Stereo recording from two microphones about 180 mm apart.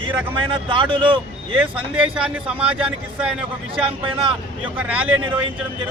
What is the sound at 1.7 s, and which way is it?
Speech, 5° right (ahead or behind).